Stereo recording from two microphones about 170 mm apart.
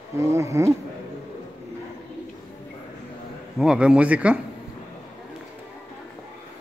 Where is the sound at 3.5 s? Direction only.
5° right (ahead or behind).